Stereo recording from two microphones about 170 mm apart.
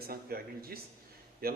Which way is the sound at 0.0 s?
65° right (ahead or behind).